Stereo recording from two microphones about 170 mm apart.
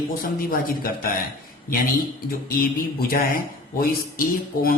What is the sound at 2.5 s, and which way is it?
Speech, 60° left (ahead or behind).